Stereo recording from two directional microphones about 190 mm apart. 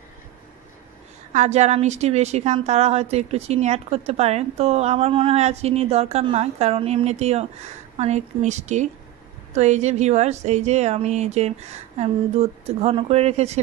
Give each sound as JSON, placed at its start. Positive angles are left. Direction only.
{"t": 1.3, "sound": "a woman's voice", "side_deg": -35}